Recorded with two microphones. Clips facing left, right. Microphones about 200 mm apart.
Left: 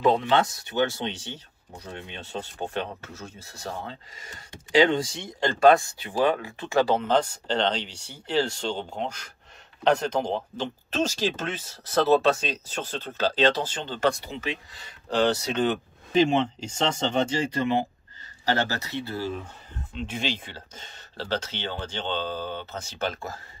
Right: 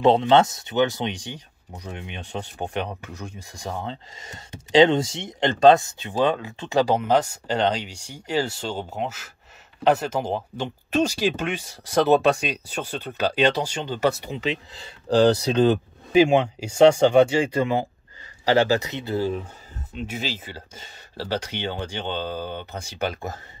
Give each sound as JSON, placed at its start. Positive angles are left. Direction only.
{"t": 0.0, "sound": "speech", "side_deg": -25}
{"t": 14.3, "sound": "speech", "side_deg": -20}
{"t": 16.1, "sound": "speech", "side_deg": -10}
{"t": 18.5, "sound": "speech", "side_deg": -15}
{"t": 20.0, "sound": "speech", "side_deg": -5}